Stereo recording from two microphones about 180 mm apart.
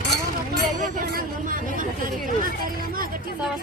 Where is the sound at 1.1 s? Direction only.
50° right (ahead or behind).